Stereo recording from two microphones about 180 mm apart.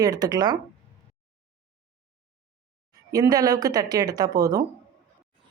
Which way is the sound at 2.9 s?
20° right (ahead or behind).